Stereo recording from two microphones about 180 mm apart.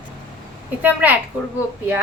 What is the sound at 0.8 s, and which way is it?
Speech, 10° right (ahead or behind).